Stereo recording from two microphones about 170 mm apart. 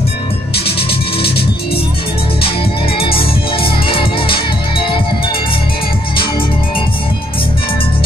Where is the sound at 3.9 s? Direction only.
30° left (ahead or behind).